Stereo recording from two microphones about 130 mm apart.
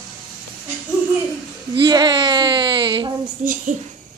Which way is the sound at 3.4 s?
75° right (ahead or behind).